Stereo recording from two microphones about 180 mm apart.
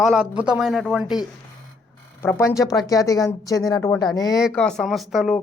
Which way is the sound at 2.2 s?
15° left (ahead or behind).